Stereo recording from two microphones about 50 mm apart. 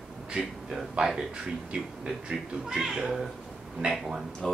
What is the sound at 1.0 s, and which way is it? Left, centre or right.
Speech, right.